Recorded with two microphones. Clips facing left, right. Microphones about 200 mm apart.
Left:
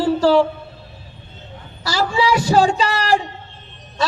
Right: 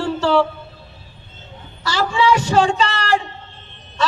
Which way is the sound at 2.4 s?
35° left (ahead or behind).